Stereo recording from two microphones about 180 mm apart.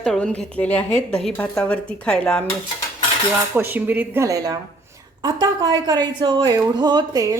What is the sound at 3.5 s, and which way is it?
A woman's voice, 10° right (ahead or behind).